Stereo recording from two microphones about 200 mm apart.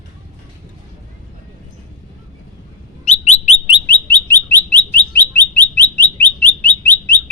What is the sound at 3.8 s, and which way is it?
Bird, 10° left (ahead or behind).